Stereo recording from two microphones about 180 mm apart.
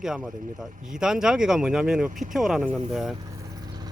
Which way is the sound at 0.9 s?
5° right (ahead or behind).